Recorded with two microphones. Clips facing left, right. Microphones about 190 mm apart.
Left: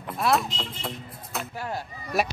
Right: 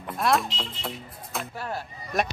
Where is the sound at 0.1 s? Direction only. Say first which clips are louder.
Even; centre (ahead or behind).